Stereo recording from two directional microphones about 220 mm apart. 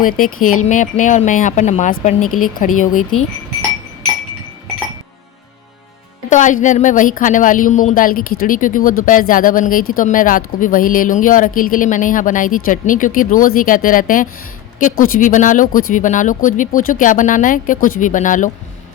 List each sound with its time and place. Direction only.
0.0 s a woman's voice: 40° left (ahead or behind)
0.3 s speech: 75° left (ahead or behind)
0.6 s a woman's voice: 35° left (ahead or behind)
3.0 s speech: 70° left (ahead or behind)
6.3 s a woman's voice: 35° left (ahead or behind)